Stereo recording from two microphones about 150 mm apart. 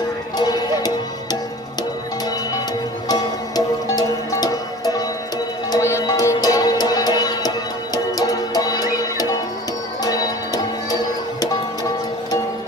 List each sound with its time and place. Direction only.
0.4 s music: 25° left (ahead or behind)
3.1 s music: 25° left (ahead or behind)